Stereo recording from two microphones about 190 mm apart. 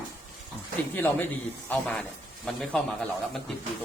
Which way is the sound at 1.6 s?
5° left (ahead or behind).